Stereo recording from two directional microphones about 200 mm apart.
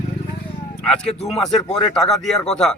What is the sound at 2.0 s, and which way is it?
Speech, centre (ahead or behind).